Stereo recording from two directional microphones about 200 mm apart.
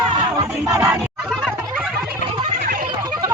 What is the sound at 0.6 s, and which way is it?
Music, 15° right (ahead or behind).